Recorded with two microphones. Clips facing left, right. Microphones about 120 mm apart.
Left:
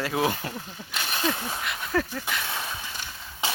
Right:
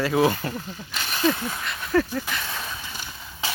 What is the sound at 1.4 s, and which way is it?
Speech, 5° left (ahead or behind).